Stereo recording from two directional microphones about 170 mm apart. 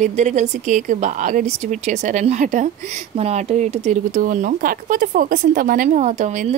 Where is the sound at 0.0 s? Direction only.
45° right (ahead or behind).